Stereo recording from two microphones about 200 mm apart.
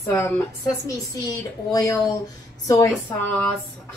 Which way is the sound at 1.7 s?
15° left (ahead or behind).